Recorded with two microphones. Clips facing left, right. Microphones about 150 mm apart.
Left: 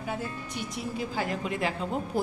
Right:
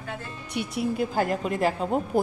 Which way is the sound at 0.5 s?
60° right (ahead or behind).